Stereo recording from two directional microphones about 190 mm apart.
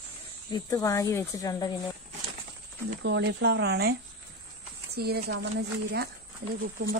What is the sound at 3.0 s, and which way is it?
Speech, 65° right (ahead or behind).